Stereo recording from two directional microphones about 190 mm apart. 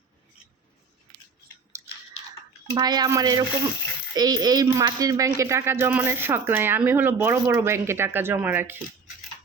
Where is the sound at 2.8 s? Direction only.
20° right (ahead or behind).